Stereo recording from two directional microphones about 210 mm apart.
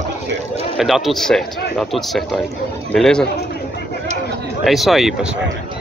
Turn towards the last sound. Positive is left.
turn(degrees=0)  # may be behind; listen again after turning